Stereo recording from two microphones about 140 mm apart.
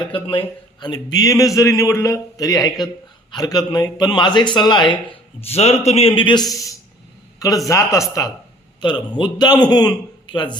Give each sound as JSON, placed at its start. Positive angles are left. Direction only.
{"t": 0.0, "sound": "a man's voice", "side_deg": 40}
{"t": 5.4, "sound": "a man's voice", "side_deg": 45}
{"t": 8.8, "sound": "a man's voice", "side_deg": 35}